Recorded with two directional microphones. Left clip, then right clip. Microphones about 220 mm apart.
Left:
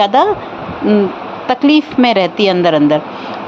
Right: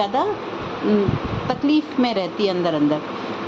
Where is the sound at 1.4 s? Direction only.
30° left (ahead or behind).